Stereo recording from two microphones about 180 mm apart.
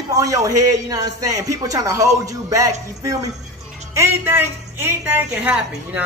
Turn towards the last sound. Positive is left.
turn(degrees=-10)  # may be behind; listen again after turning